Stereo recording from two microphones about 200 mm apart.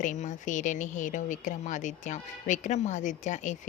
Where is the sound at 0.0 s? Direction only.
40° left (ahead or behind).